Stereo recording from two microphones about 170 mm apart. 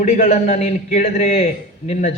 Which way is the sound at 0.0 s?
40° left (ahead or behind).